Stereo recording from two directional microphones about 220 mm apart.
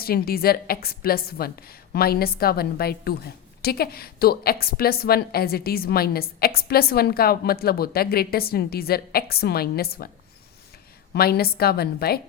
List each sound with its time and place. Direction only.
0.0 s a woman's voice: 45° left (ahead or behind)
11.1 s a woman's voice: 45° left (ahead or behind)